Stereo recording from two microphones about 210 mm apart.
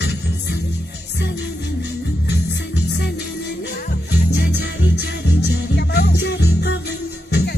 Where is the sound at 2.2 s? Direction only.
55° left (ahead or behind).